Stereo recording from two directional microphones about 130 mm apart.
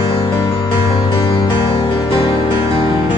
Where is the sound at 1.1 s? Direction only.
40° left (ahead or behind).